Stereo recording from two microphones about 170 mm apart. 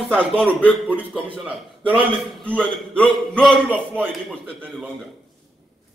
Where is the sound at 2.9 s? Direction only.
5° left (ahead or behind).